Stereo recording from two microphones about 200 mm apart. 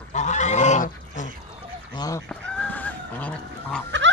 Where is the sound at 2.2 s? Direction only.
5° left (ahead or behind).